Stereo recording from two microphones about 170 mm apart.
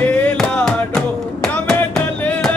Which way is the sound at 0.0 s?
10° left (ahead or behind).